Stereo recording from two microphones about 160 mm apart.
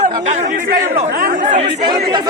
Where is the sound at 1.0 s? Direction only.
55° right (ahead or behind).